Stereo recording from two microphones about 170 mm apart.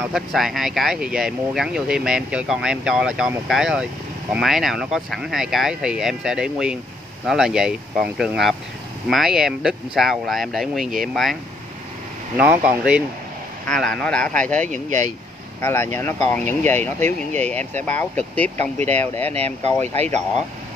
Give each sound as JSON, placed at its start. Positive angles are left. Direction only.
{"t": 0.1, "sound": "speech", "side_deg": 0}
{"t": 12.4, "sound": "speech", "side_deg": -10}
{"t": 13.7, "sound": "speech", "side_deg": 5}
{"t": 14.9, "sound": "speech", "side_deg": -45}
{"t": 15.6, "sound": "speech", "side_deg": 15}
{"t": 19.4, "sound": "speech", "side_deg": -40}